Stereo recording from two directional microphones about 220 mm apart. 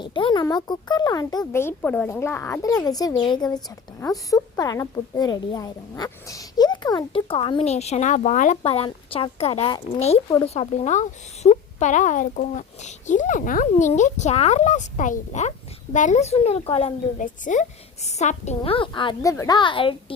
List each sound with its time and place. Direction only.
0.0 s a child's voice: 20° left (ahead or behind)
10.5 s a woman's voice: 30° left (ahead or behind)